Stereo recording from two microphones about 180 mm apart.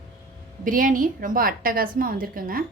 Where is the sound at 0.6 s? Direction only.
50° right (ahead or behind).